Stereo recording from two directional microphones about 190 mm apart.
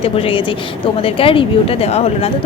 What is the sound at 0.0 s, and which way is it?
A woman's voice, 30° left (ahead or behind).